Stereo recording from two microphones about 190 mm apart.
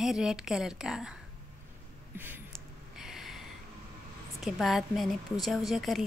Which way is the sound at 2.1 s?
10° right (ahead or behind).